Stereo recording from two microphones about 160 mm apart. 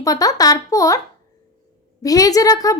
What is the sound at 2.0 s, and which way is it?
Speech, 20° left (ahead or behind).